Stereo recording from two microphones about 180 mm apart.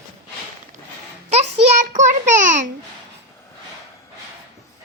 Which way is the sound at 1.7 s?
45° right (ahead or behind).